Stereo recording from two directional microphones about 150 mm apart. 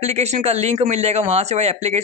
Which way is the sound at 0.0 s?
45° right (ahead or behind).